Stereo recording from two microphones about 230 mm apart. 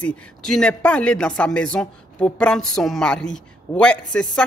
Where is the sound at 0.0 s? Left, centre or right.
Centre.